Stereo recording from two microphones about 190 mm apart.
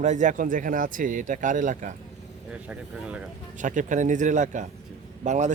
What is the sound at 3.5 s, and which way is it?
A man's voice, 40° right (ahead or behind).